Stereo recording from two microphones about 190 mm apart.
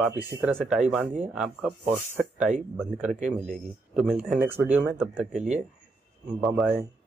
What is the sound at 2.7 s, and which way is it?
Speech, 5° left (ahead or behind).